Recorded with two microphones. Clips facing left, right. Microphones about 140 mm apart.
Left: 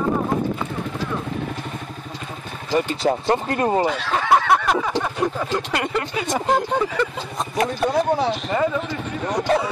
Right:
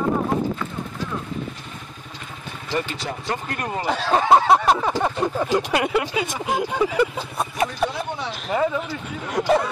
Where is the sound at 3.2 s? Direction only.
30° left (ahead or behind).